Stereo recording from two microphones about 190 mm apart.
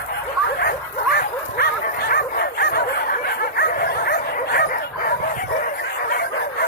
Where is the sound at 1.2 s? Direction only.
55° left (ahead or behind).